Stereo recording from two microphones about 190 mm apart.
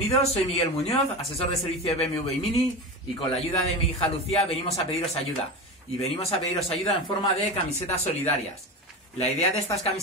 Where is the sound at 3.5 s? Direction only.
35° left (ahead or behind).